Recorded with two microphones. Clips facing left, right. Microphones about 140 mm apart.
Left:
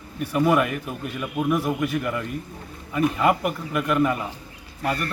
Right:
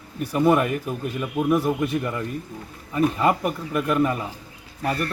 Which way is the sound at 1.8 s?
30° right (ahead or behind).